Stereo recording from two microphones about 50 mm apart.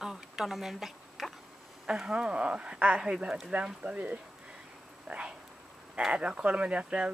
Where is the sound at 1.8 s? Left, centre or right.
Centre.